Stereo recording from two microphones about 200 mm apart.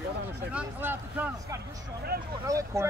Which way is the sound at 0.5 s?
10° right (ahead or behind).